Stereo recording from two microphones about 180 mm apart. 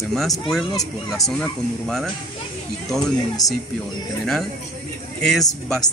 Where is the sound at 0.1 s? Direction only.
Centre (ahead or behind).